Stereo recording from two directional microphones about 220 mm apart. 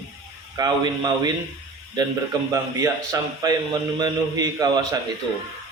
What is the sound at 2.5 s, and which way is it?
A man's voice, 15° right (ahead or behind).